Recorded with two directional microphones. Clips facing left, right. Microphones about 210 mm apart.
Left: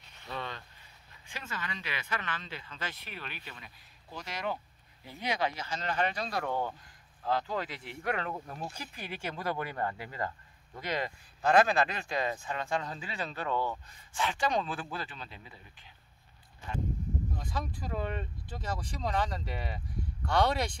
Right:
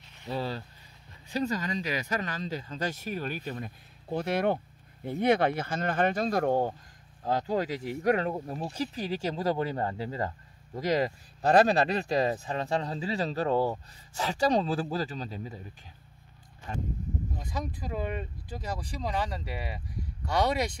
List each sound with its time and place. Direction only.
0.3 s speech: 30° right (ahead or behind)
17.4 s speech: 10° right (ahead or behind)